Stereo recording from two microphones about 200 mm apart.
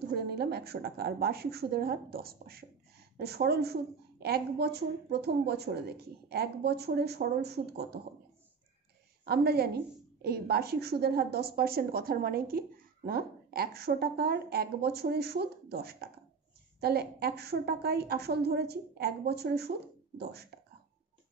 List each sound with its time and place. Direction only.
0.3 s a woman's voice: 55° right (ahead or behind)
9.2 s a woman's voice: 50° right (ahead or behind)